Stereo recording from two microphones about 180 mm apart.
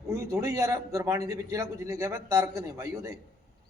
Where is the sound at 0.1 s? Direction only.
15° right (ahead or behind).